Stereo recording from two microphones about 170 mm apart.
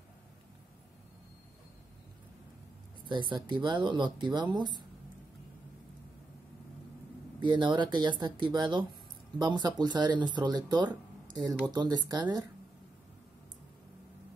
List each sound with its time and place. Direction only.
3.1 s speech: 25° right (ahead or behind)
7.3 s speech: 25° right (ahead or behind)